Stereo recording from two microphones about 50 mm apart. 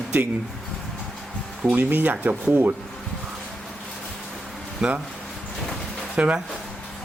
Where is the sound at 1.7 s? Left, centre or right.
Right.